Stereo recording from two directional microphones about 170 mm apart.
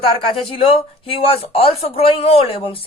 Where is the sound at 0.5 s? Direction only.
35° left (ahead or behind).